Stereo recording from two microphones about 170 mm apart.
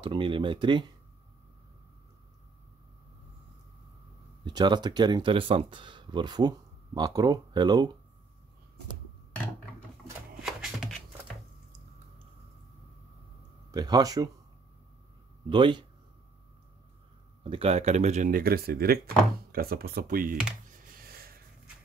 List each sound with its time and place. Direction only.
0.0 s speech: 30° right (ahead or behind)
4.5 s speech: 25° right (ahead or behind)
10.4 s shuffling cards: centre (ahead or behind)
13.7 s speech: 25° right (ahead or behind)
15.5 s speech: 25° right (ahead or behind)
17.4 s speech: 35° right (ahead or behind); by 20.3 s 55° right (ahead or behind)
20.9 s a sound: 60° right (ahead or behind)